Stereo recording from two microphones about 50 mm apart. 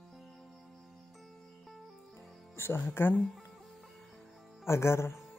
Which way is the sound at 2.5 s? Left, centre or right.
Left.